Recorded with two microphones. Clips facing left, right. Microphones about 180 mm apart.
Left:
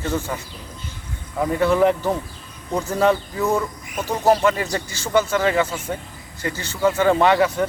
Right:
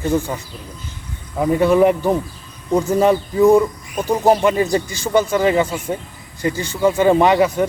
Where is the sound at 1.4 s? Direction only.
15° right (ahead or behind).